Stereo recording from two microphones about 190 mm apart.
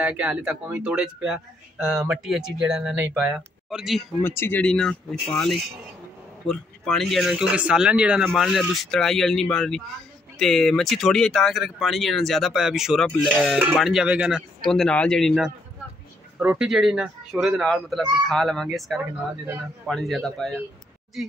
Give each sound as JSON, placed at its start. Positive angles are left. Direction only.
{"t": 0.0, "sound": "speech", "side_deg": -5}
{"t": 4.2, "sound": "speech", "side_deg": 10}
{"t": 18.9, "sound": "speech", "side_deg": -10}
{"t": 19.9, "sound": "speech", "side_deg": 0}